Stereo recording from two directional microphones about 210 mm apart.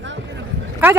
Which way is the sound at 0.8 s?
10° right (ahead or behind).